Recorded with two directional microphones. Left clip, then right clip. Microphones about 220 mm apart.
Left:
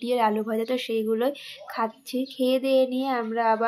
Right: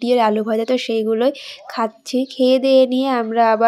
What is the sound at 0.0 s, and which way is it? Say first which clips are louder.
Speech: right 8 dB; 30° right (ahead or behind).